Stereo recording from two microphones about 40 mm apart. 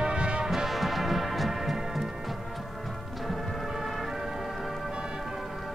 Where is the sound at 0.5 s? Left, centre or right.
Centre.